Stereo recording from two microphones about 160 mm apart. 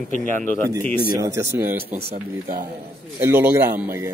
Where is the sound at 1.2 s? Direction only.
15° right (ahead or behind).